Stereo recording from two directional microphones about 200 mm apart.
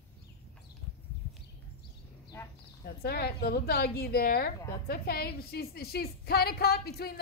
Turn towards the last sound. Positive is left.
turn(degrees=50)  # may be behind; listen again after turning